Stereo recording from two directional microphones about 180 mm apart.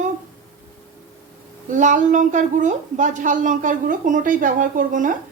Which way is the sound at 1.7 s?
45° right (ahead or behind).